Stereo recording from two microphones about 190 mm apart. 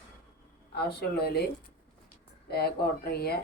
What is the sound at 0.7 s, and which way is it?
Speech, 60° left (ahead or behind).